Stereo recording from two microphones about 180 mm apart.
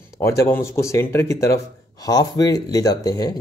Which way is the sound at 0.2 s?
15° left (ahead or behind).